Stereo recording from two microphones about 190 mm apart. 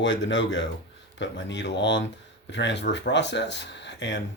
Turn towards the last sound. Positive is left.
turn(degrees=70)  # may be behind; listen again after turning